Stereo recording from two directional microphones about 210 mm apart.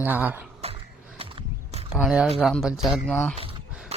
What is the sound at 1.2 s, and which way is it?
Horse, 25° right (ahead or behind).